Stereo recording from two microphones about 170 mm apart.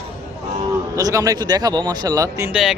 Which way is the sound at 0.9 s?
20° right (ahead or behind).